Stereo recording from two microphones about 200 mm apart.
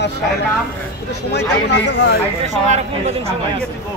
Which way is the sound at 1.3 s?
55° left (ahead or behind).